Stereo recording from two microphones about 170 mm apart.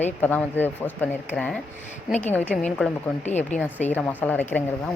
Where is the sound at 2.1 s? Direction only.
10° left (ahead or behind).